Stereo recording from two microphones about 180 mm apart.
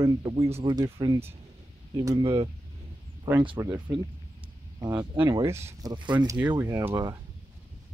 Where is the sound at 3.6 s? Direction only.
15° right (ahead or behind).